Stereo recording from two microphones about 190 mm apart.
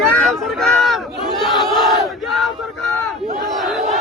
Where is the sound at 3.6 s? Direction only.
Centre (ahead or behind).